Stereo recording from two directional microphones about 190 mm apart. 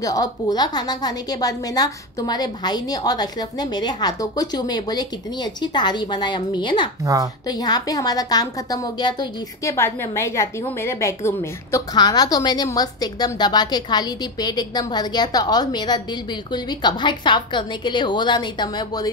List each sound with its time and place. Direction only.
0.0 s a woman's voice: 20° left (ahead or behind)